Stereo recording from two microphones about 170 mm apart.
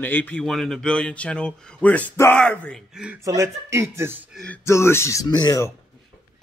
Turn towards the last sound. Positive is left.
turn(degrees=20)  # may be behind; listen again after turning